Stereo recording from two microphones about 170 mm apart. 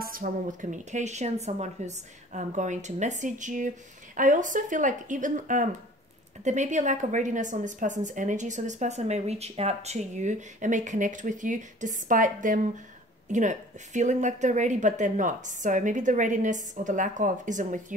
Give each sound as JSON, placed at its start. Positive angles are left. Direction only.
{"t": 0.0, "sound": "a woman's voice", "side_deg": -55}